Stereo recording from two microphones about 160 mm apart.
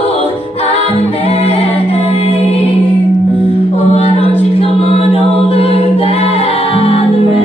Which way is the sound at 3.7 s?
35° left (ahead or behind).